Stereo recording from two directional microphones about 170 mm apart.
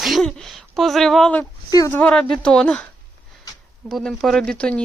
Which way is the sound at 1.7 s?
20° left (ahead or behind).